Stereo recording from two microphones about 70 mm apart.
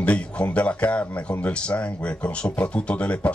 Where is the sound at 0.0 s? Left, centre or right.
Centre.